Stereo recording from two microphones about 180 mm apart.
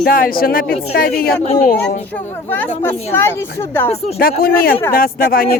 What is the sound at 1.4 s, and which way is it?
Speech, 35° left (ahead or behind).